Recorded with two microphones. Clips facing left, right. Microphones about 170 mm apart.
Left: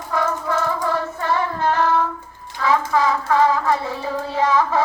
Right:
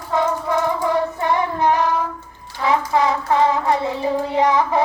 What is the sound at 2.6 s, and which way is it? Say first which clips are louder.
Hands: right 1 dB; 20° right (ahead or behind).